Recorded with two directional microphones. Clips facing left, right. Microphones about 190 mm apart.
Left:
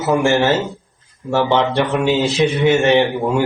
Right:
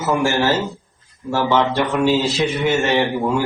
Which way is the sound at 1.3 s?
20° left (ahead or behind).